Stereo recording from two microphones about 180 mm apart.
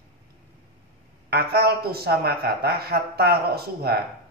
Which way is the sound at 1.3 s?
60° right (ahead or behind).